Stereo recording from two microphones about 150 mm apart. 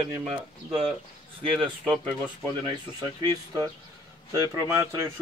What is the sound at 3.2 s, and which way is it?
Speech, 25° right (ahead or behind).